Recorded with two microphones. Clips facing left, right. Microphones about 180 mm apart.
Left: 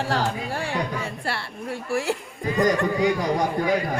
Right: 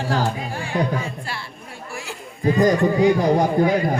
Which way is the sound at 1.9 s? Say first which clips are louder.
Left 10 dB; 70° left (ahead or behind).